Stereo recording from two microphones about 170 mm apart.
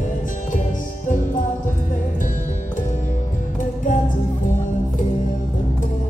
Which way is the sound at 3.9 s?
50° left (ahead or behind).